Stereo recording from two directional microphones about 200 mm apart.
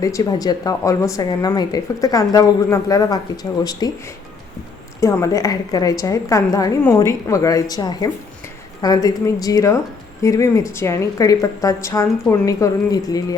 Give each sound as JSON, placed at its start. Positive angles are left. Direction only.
{"t": 0.0, "sound": "a woman's voice", "side_deg": 15}
{"t": 4.9, "sound": "a woman's voice", "side_deg": 15}